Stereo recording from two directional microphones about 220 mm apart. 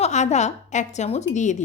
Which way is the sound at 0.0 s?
30° left (ahead or behind).